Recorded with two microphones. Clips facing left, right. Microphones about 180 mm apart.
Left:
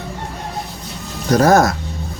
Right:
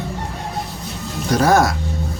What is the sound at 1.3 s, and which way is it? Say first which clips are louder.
Speech: left 3 dB; 45° left (ahead or behind).